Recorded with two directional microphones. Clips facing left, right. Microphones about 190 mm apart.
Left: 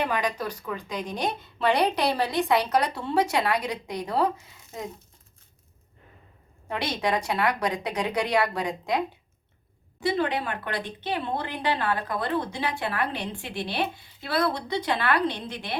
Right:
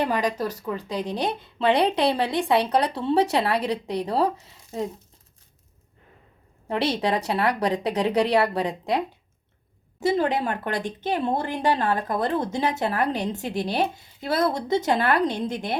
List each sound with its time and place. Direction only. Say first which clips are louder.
0.0 s speech: right 3 dB; 40° right (ahead or behind)
6.7 s speech: right 4 dB; 35° right (ahead or behind)
10.0 s speech: right 4 dB; 45° right (ahead or behind)